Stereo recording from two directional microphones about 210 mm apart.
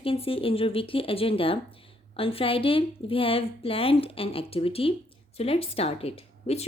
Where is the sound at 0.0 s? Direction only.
25° left (ahead or behind).